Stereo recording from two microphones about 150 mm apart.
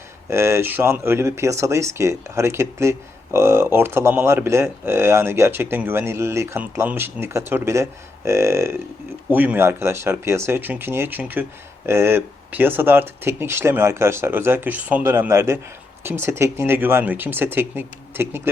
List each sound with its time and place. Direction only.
0.3 s speech: 15° right (ahead or behind)